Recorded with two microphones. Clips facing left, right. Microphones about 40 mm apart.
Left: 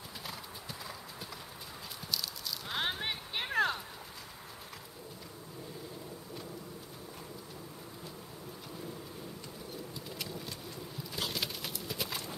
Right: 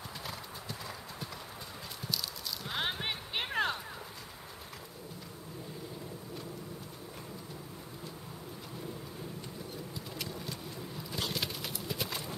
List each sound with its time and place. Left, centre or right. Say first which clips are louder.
0.3 s clip-clop: right 2 dB; centre
2.7 s clip-clop: even; centre
3.0 s clip-clop: right 1 dB; centre
10.1 s vehicle: right 1 dB; centre
11.1 s clip-clop: right 1 dB; centre